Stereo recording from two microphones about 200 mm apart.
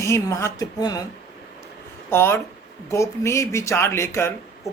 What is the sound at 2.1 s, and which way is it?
Speech, 10° left (ahead or behind).